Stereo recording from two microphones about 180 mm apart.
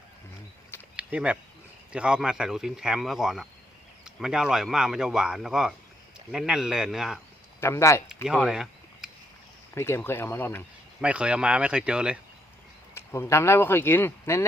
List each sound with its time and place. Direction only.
0.9 s a sound: 5° right (ahead or behind)
1.9 s speech: 5° right (ahead or behind)
7.6 s speech: 15° left (ahead or behind)
8.3 s a sound: 5° right (ahead or behind)
9.7 s speech: 15° left (ahead or behind)
11.0 s speech: 5° right (ahead or behind)
12.9 s speech: 15° left (ahead or behind)